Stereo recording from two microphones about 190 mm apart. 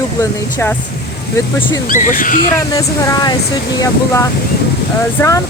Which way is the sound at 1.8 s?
45° left (ahead or behind).